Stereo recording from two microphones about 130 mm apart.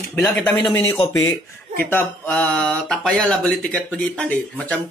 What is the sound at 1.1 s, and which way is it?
Speech, 20° left (ahead or behind).